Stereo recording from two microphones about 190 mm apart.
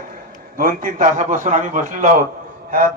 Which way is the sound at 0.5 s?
45° right (ahead or behind).